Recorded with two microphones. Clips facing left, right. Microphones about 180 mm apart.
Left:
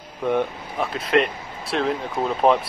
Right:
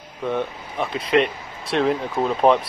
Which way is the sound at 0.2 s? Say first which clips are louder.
Left 3 dB; 15° left (ahead or behind).